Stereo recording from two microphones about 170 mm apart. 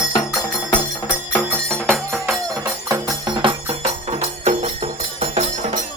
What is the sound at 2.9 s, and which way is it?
Music, 25° right (ahead or behind).